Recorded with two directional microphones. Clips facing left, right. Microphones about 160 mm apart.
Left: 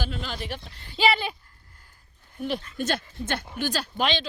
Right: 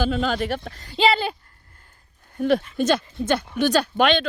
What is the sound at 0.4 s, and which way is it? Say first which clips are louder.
Speech: right 9 dB; 50° right (ahead or behind).